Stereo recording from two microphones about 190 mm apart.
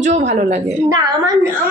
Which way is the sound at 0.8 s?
20° right (ahead or behind).